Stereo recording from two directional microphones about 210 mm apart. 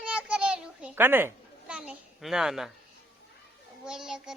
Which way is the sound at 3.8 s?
5° right (ahead or behind).